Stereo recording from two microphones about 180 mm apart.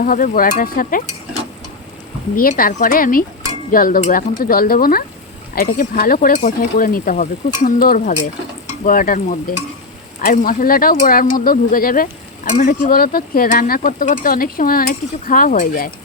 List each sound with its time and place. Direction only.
0.0 s speech: 50° left (ahead or behind)
2.3 s speech: 50° left (ahead or behind)